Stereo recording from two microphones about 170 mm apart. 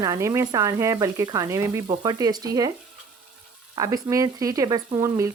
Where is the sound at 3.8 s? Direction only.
20° right (ahead or behind).